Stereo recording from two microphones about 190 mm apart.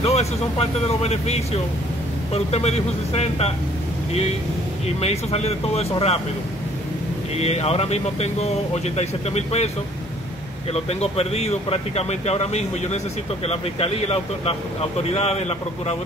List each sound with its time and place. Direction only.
0.0 s speech: 35° left (ahead or behind)
4.8 s speech: 35° left (ahead or behind)
7.3 s speech: 35° left (ahead or behind)
10.7 s speech: 35° left (ahead or behind)